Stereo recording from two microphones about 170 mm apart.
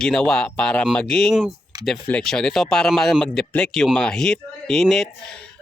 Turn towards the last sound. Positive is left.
turn(degrees=0)  # may be behind; listen again after turning